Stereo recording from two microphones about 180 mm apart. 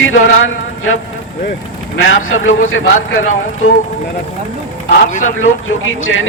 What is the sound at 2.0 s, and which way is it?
Speech, 90° left.